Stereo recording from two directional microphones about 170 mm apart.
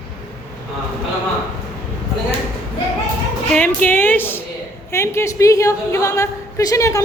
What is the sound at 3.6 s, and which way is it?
A woman's voice, 10° left (ahead or behind).